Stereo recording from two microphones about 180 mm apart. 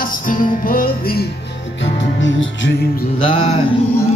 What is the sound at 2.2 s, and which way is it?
Music, 90° left.